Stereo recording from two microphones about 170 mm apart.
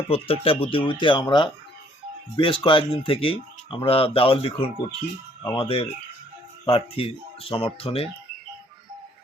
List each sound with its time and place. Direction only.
0.1 s speech: 35° left (ahead or behind)